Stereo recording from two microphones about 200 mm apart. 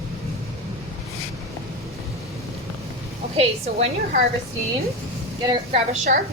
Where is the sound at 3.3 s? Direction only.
30° right (ahead or behind).